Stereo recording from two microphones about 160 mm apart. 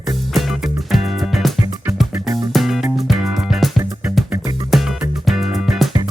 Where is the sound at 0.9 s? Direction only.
Centre (ahead or behind).